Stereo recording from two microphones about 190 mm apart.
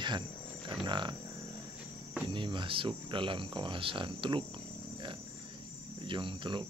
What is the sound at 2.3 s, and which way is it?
Speech, 25° right (ahead or behind).